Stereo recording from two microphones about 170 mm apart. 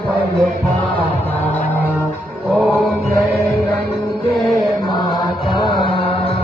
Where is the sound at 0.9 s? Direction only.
10° left (ahead or behind).